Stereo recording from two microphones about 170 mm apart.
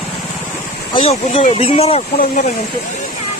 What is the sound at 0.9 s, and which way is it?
Speech, 35° left (ahead or behind).